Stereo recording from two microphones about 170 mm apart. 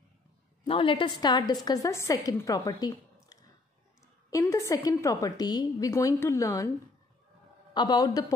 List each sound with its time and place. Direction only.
0.7 s a woman's voice: 30° left (ahead or behind)
7.7 s a woman's voice: 25° left (ahead or behind)